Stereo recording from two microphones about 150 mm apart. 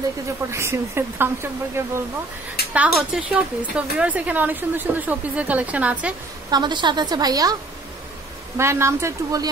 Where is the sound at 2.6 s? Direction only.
90° left.